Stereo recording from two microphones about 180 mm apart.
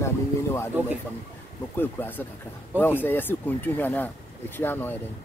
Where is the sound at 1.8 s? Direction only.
10° left (ahead or behind).